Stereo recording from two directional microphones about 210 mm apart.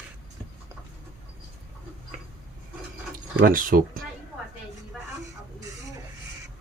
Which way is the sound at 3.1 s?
40° right (ahead or behind).